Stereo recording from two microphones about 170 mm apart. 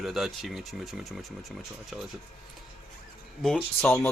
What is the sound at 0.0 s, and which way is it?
Speech, centre (ahead or behind).